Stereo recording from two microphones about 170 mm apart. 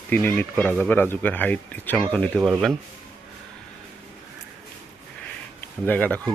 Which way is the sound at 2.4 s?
10° right (ahead or behind).